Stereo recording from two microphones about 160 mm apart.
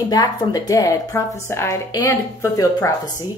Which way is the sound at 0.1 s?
25° left (ahead or behind).